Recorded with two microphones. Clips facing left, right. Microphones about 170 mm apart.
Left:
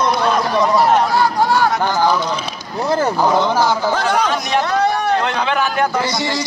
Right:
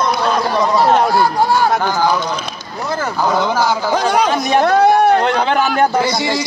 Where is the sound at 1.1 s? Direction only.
10° right (ahead or behind).